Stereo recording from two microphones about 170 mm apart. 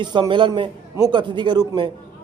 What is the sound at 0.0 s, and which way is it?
A man's voice, 25° right (ahead or behind).